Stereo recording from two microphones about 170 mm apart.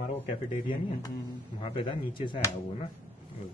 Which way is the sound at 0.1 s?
30° left (ahead or behind).